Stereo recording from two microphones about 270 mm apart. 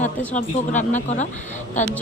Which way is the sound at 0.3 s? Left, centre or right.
Left.